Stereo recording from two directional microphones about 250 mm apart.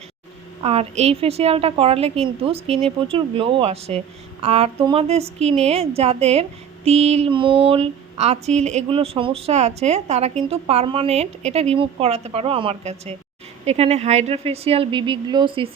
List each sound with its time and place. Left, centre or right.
0.6 s speech: right